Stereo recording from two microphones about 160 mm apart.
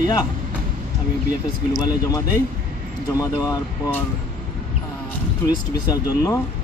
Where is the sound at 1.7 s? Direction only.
20° left (ahead or behind).